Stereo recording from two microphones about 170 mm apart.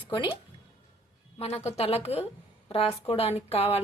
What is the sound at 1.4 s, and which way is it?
A woman's voice, 35° left (ahead or behind).